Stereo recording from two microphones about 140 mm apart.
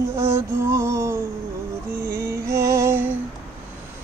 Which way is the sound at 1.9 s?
20° right (ahead or behind).